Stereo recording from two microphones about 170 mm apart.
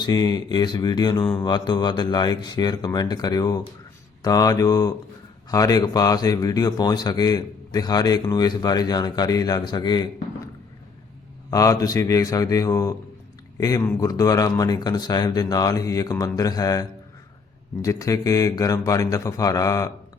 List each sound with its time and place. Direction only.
0.0 s a man's voice: 25° left (ahead or behind)
11.5 s a man's voice: 20° left (ahead or behind)
17.8 s a man's voice: 20° left (ahead or behind)